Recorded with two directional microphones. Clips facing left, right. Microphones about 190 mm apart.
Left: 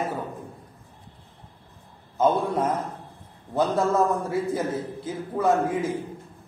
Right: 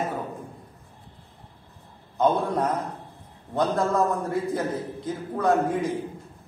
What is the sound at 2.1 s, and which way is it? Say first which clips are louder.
A man's voice: even; centre (ahead or behind).